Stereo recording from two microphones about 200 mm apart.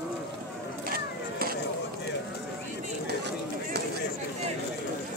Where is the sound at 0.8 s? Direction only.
50° right (ahead or behind).